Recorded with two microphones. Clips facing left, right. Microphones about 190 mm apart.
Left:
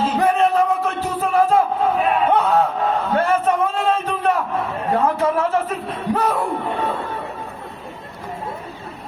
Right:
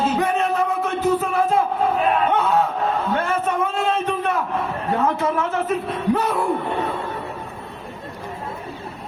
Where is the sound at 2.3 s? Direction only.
35° left (ahead or behind).